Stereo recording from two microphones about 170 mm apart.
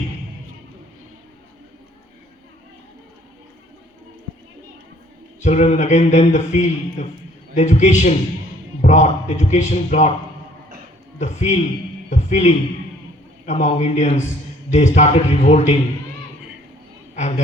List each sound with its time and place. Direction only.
5.4 s a man's voice: 40° left (ahead or behind)
11.2 s a man's voice: 40° left (ahead or behind)
17.2 s a sound: 40° left (ahead or behind)